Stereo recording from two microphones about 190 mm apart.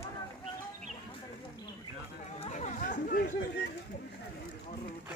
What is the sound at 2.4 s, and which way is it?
Chatter, 40° left (ahead or behind).